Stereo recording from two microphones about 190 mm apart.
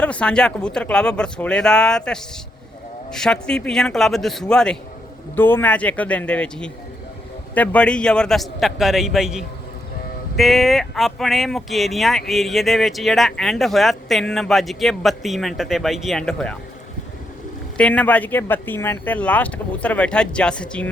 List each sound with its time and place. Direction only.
0.0 s speech: 5° left (ahead or behind)
17.7 s speech: 5° left (ahead or behind)